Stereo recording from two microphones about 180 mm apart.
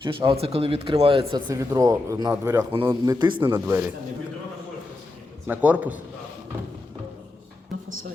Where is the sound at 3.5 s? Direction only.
15° right (ahead or behind).